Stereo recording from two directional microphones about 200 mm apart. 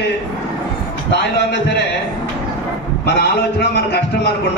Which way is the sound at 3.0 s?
55° left (ahead or behind).